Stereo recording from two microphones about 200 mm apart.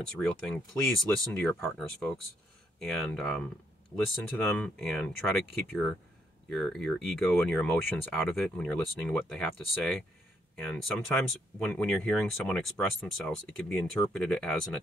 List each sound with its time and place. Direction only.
0.2 s speech: 5° left (ahead or behind)